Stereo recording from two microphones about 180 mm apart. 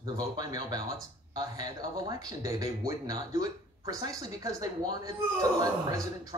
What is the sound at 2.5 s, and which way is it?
Speech, 20° right (ahead or behind).